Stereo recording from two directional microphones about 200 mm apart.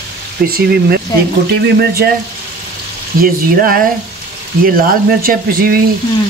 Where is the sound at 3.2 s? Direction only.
45° right (ahead or behind).